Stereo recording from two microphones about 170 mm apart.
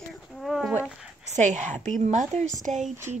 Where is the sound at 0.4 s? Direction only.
5° right (ahead or behind).